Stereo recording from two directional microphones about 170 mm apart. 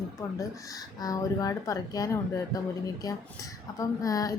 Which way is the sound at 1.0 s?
20° left (ahead or behind).